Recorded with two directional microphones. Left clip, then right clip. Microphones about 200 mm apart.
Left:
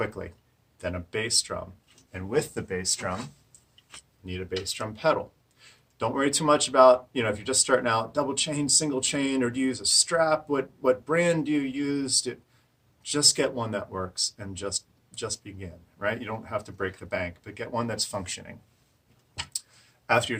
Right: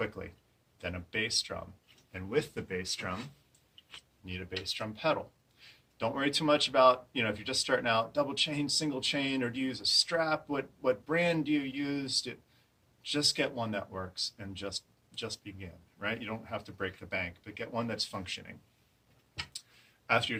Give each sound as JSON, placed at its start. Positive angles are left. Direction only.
{"t": 0.2, "sound": "speech", "side_deg": 15}
{"t": 4.3, "sound": "speech", "side_deg": 25}